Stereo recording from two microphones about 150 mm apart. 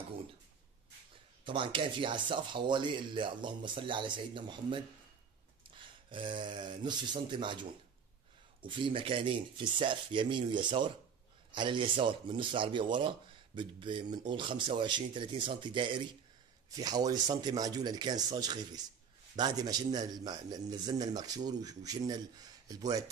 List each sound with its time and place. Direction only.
1.4 s speech: 35° right (ahead or behind)
8.6 s a man's voice: 35° right (ahead or behind)